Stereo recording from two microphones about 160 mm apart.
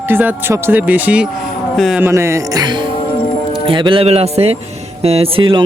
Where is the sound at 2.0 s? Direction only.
15° right (ahead or behind).